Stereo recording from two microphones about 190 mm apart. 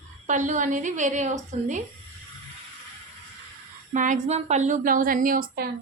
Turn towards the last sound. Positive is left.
turn(degrees=-50)  # may be behind; listen again after turning